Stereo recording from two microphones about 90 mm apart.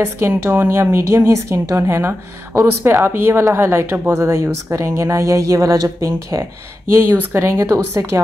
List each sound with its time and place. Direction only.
0.4 s a woman's voice: 25° right (ahead or behind)